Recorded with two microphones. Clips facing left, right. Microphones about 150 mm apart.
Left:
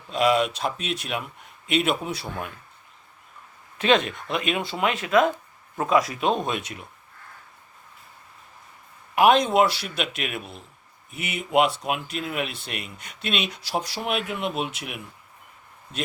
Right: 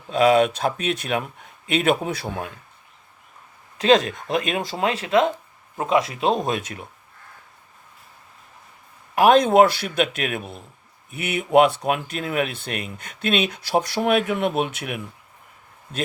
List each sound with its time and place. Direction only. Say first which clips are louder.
0.1 s speech: right 5 dB; 50° right (ahead or behind)
3.8 s speech: right 4 dB; 40° right (ahead or behind)
9.1 s speech: right 4 dB; 45° right (ahead or behind)
11.2 s speech: right 5 dB; 55° right (ahead or behind)